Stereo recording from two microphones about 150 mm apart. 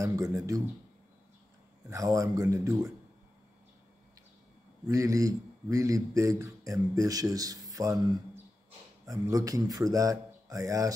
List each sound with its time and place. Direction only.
0.0 s speech: 20° right (ahead or behind)
1.9 s speech: 20° right (ahead or behind)
4.8 s speech: 20° right (ahead or behind)